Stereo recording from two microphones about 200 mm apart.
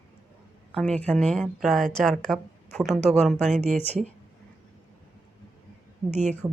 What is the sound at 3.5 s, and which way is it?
Speech, 35° right (ahead or behind).